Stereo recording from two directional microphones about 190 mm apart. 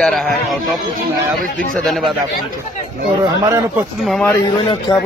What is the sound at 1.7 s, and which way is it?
Speech, centre (ahead or behind).